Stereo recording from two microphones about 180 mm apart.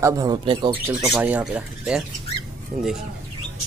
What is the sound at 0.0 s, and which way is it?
Speech, 20° right (ahead or behind).